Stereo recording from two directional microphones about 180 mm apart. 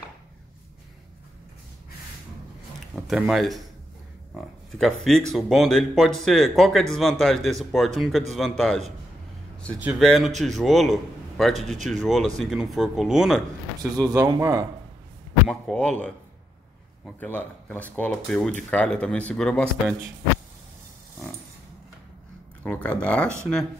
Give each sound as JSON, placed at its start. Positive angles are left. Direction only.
{"t": 3.1, "sound": "speech", "side_deg": 0}
{"t": 4.3, "sound": "a sound", "side_deg": 0}
{"t": 5.3, "sound": "speech", "side_deg": 0}
{"t": 13.9, "sound": "speech", "side_deg": -20}
{"t": 15.4, "sound": "speech", "side_deg": 0}
{"t": 22.6, "sound": "speech", "side_deg": 5}